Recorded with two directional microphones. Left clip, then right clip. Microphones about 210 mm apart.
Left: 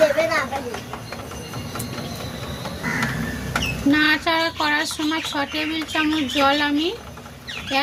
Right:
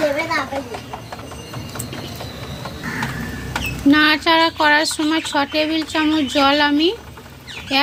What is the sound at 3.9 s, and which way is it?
Speech, 40° right (ahead or behind).